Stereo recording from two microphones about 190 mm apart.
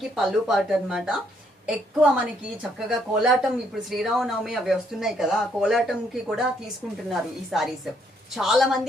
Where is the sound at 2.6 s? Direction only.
5° right (ahead or behind).